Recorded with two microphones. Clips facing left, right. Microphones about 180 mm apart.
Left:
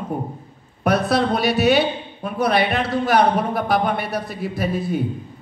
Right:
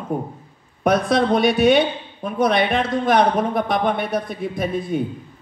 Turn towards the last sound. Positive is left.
turn(degrees=5)  # may be behind; listen again after turning